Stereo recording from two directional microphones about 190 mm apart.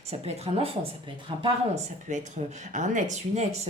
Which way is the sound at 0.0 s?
35° right (ahead or behind).